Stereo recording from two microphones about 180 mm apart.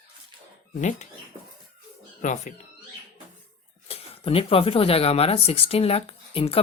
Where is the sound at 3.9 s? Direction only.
30° left (ahead or behind).